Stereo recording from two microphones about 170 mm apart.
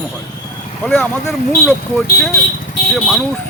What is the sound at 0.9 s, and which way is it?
Speech, 10° left (ahead or behind).